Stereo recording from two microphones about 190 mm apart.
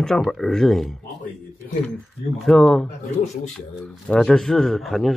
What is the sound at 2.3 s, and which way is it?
Speech, centre (ahead or behind).